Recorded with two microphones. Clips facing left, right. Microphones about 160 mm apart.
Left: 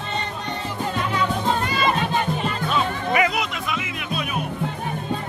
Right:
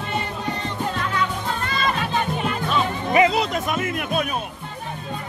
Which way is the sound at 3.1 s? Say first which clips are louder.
Right 5 dB; 25° right (ahead or behind).